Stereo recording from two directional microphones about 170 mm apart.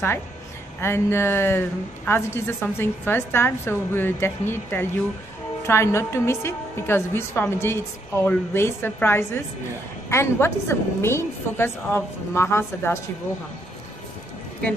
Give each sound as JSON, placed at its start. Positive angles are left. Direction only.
{"t": 0.7, "sound": "a woman's voice", "side_deg": 15}